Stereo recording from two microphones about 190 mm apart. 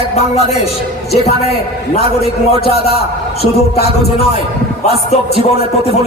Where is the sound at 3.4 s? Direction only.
55° left (ahead or behind).